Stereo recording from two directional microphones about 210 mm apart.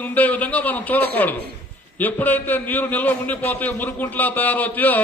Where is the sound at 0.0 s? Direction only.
5° left (ahead or behind).